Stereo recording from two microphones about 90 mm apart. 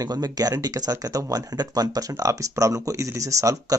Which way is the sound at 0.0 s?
45° right (ahead or behind).